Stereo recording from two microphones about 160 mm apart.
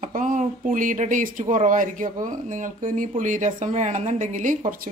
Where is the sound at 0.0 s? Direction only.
55° right (ahead or behind).